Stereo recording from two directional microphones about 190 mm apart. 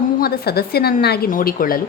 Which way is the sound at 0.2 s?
55° left (ahead or behind).